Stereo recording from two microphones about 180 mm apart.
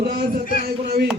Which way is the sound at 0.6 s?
60° right (ahead or behind).